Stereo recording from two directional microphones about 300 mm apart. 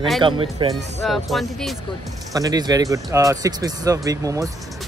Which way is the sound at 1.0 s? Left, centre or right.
Centre.